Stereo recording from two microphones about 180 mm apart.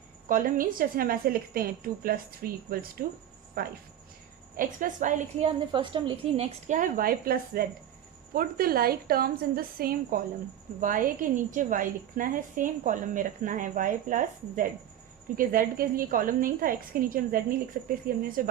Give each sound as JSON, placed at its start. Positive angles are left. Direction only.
{"t": 0.3, "sound": "a woman's voice", "side_deg": -50}
{"t": 5.5, "sound": "a woman's voice", "side_deg": -25}